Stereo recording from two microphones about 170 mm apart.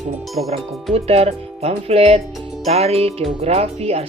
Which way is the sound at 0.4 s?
40° right (ahead or behind).